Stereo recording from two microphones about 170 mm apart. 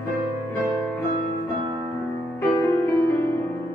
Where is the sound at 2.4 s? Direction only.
20° left (ahead or behind).